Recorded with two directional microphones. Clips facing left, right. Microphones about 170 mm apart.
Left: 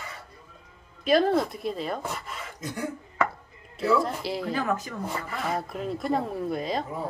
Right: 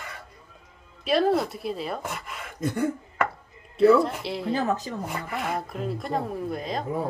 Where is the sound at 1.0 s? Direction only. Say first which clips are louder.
Even; centre (ahead or behind).